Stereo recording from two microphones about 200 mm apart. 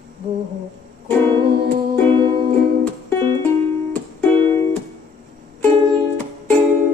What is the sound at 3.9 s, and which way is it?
Music, 10° left (ahead or behind).